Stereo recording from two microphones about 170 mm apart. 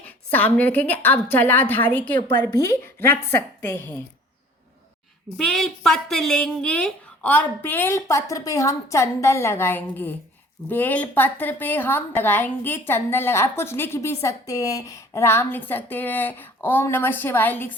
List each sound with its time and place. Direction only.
0.0 s a woman's voice: 10° left (ahead or behind)
5.4 s a woman's voice: centre (ahead or behind)